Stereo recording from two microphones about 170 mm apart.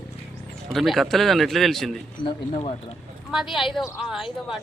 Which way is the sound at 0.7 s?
Centre (ahead or behind).